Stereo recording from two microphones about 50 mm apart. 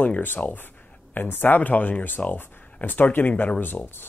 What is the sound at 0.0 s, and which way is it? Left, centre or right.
Speech, left.